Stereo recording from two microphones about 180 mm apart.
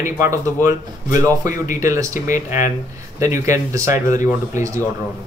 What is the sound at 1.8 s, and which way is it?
Speech, 15° right (ahead or behind).